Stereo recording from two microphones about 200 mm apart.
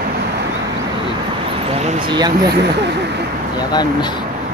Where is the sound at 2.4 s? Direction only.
55° right (ahead or behind).